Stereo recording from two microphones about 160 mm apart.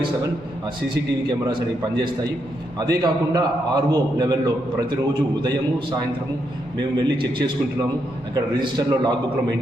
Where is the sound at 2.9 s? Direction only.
25° right (ahead or behind).